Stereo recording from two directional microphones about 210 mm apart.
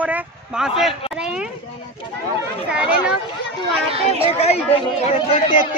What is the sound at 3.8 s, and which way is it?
Speech, 25° right (ahead or behind).